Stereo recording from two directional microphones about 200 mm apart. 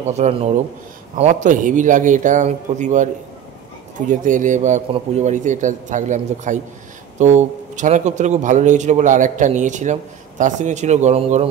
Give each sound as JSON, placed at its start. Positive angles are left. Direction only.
{"t": 0.1, "sound": "a man's voice", "side_deg": -30}
{"t": 4.1, "sound": "a man's voice", "side_deg": -40}